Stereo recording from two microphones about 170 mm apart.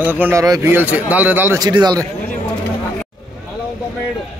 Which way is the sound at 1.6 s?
25° right (ahead or behind).